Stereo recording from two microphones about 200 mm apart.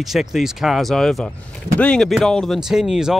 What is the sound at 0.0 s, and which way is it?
Speech, centre (ahead or behind).